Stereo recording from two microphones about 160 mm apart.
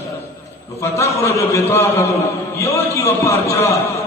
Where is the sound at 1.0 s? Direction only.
15° left (ahead or behind).